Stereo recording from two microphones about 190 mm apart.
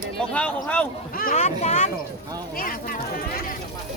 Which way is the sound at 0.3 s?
5° left (ahead or behind).